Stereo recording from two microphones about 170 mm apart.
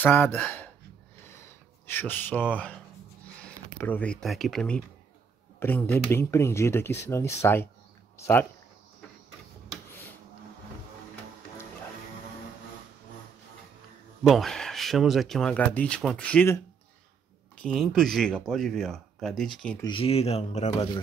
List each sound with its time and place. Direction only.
0.0 s speech: 10° left (ahead or behind)
14.2 s speech: centre (ahead or behind)
19.8 s speech: 30° left (ahead or behind)